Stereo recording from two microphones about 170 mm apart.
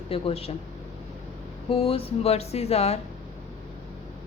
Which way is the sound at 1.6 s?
35° left (ahead or behind).